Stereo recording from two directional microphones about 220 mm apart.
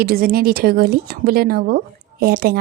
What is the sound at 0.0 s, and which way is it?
A woman's voice, 40° right (ahead or behind).